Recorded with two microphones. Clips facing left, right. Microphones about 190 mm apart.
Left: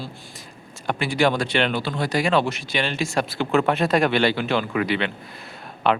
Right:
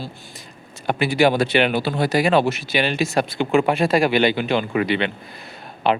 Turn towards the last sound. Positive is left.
turn(degrees=0)  # may be behind; listen again after turning